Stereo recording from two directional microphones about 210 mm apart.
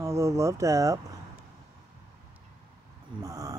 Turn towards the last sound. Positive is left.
turn(degrees=-15)  # may be behind; listen again after turning